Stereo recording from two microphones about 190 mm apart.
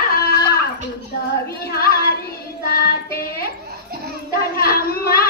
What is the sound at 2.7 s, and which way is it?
Child singing, 50° left (ahead or behind).